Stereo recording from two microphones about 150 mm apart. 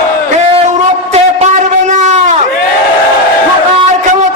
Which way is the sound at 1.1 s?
50° right (ahead or behind).